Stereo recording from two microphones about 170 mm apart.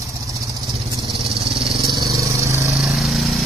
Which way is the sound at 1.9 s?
20° right (ahead or behind).